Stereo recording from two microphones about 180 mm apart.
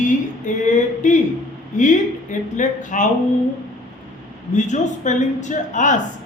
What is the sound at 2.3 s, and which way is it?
Speech, 45° left (ahead or behind).